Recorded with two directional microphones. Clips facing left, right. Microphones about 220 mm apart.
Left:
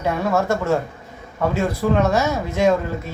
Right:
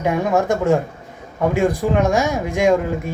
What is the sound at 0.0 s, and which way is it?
Speech, 15° right (ahead or behind).